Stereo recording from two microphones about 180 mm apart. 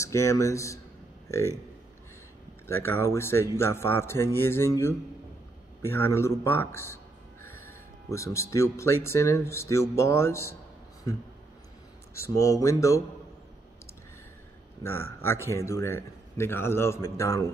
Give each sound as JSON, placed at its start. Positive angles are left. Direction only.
{"t": 0.0, "sound": "a man's voice", "side_deg": 15}
{"t": 2.7, "sound": "a man's voice", "side_deg": 15}
{"t": 12.1, "sound": "a man's voice", "side_deg": 15}
{"t": 14.8, "sound": "a man's voice", "side_deg": 15}